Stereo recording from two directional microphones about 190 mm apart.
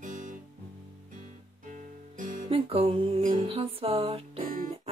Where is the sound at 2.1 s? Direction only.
45° right (ahead or behind).